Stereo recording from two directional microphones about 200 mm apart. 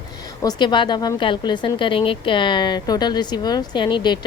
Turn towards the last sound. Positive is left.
turn(degrees=20)  # may be behind; listen again after turning